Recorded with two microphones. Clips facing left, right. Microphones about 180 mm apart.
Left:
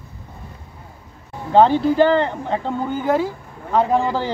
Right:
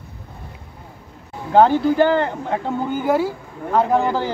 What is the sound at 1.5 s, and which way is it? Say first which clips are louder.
Speech: even; 5° right (ahead or behind).